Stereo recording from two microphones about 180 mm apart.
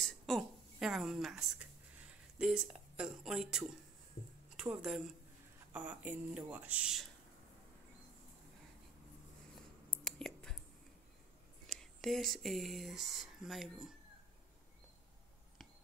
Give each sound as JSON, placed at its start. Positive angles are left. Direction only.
{"t": 0.0, "sound": "a sound", "side_deg": 0}
{"t": 4.6, "sound": "a woman's voice", "side_deg": -5}
{"t": 10.0, "sound": "whispering", "side_deg": 5}
{"t": 11.6, "sound": "speech", "side_deg": 0}